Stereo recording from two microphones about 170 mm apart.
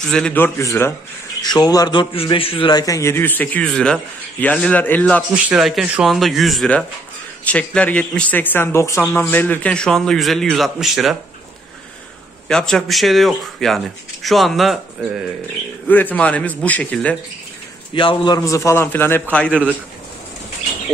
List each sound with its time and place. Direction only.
0.1 s a man's voice: 5° left (ahead or behind)
5.3 s a man's voice: 5° right (ahead or behind)
12.4 s speech: 5° left (ahead or behind)
15.9 s a man's voice: 10° left (ahead or behind)
17.9 s a man's voice: 30° left (ahead or behind); by 19.7 s 5° left (ahead or behind)